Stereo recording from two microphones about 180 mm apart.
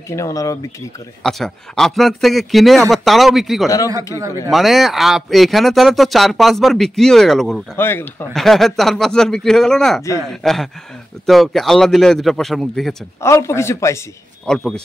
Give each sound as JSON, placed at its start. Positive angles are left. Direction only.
{"t": 0.1, "sound": "speech", "side_deg": 15}
{"t": 1.2, "sound": "speech", "side_deg": 0}
{"t": 3.6, "sound": "speech", "side_deg": 20}
{"t": 4.5, "sound": "speech", "side_deg": 0}
{"t": 7.7, "sound": "speech", "side_deg": 10}
{"t": 13.2, "sound": "speech", "side_deg": 15}
{"t": 14.4, "sound": "speech", "side_deg": 5}